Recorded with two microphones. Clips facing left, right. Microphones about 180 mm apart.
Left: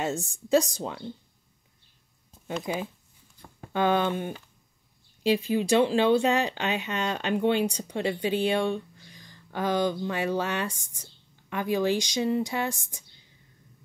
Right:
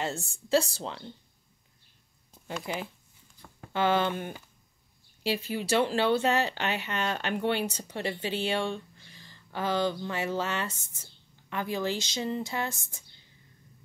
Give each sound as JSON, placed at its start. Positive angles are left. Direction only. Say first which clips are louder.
{"t": 0.0, "sound": "speech", "louder": "left 4 dB", "side_deg": 15}
{"t": 2.4, "sound": "speech", "louder": "left 4 dB", "side_deg": 20}